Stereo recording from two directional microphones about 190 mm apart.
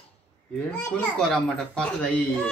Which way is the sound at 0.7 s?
10° left (ahead or behind).